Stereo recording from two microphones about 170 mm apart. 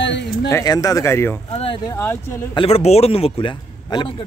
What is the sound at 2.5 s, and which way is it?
A man's voice, 35° left (ahead or behind).